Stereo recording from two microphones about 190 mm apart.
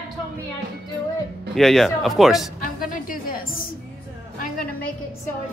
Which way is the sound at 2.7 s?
45° left (ahead or behind).